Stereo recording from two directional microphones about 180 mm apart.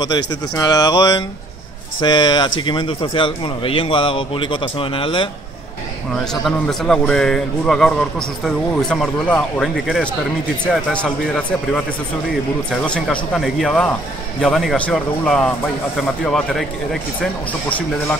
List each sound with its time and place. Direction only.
0.0 s a man's voice: 20° left (ahead or behind)
6.1 s a man's voice: centre (ahead or behind)
12.8 s a man's voice: 5° left (ahead or behind)